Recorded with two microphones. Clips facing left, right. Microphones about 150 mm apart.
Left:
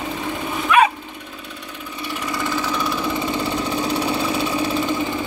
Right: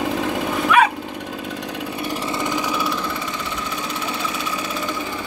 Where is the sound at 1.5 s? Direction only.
90° right.